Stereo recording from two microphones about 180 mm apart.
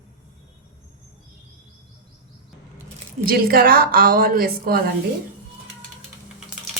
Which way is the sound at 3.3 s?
55° right (ahead or behind).